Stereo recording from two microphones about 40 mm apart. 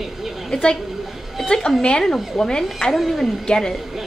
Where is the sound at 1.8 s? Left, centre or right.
Left.